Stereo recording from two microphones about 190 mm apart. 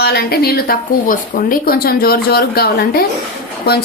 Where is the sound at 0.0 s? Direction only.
55° left (ahead or behind).